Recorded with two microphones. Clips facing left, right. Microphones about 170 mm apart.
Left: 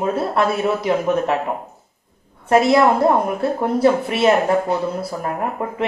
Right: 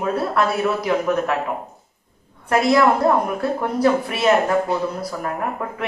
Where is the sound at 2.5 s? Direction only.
30° left (ahead or behind).